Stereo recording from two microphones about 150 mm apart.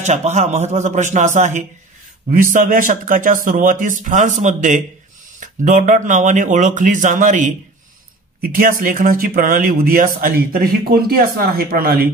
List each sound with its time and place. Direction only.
0.0 s a man's voice: 50° right (ahead or behind)
2.3 s a man's voice: 65° right (ahead or behind)
8.4 s speech: 70° right (ahead or behind)